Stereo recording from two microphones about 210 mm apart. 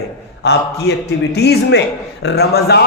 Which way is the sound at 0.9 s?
55° left (ahead or behind).